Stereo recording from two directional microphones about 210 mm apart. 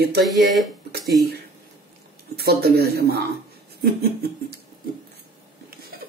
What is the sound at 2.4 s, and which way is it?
Speech, 50° right (ahead or behind).